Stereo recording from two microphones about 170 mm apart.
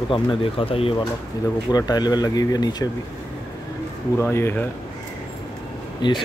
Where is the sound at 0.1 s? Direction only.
30° left (ahead or behind).